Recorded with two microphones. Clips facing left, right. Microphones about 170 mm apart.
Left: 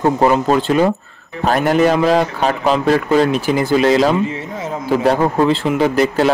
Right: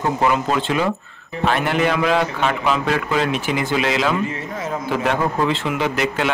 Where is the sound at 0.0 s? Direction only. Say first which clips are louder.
Left 5 dB; 40° left (ahead or behind).